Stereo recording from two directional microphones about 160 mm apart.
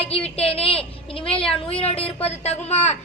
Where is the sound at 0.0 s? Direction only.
40° left (ahead or behind).